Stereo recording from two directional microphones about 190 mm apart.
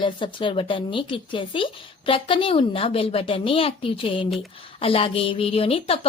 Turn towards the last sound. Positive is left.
turn(degrees=30)  # may be behind; listen again after turning